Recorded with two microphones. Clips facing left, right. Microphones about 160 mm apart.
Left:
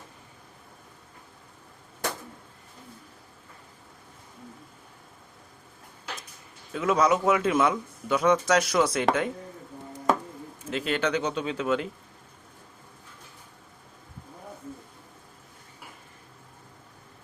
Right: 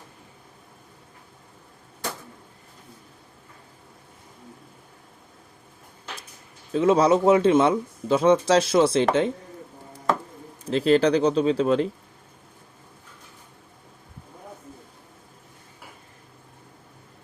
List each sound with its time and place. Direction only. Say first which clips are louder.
6.7 s speech: right 5 dB; 30° right (ahead or behind)
10.7 s speech: right 8 dB; 35° right (ahead or behind)